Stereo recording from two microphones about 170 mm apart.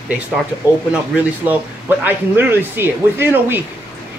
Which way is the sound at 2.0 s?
10° right (ahead or behind).